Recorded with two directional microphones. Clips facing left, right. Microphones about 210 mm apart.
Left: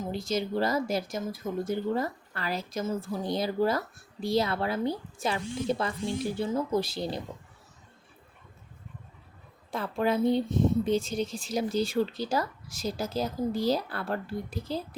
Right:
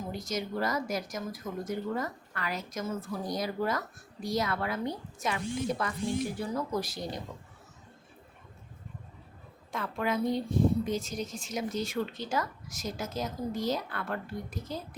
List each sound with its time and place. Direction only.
0.0 s speech: 30° left (ahead or behind)
9.7 s speech: 30° left (ahead or behind)